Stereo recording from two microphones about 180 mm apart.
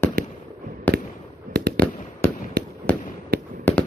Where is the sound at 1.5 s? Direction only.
50° right (ahead or behind).